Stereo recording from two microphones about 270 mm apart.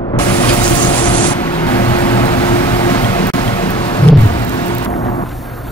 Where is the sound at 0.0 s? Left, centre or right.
Centre.